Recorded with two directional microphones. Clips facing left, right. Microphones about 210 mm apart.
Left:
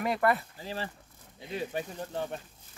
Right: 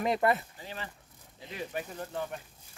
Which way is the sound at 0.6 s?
35° left (ahead or behind).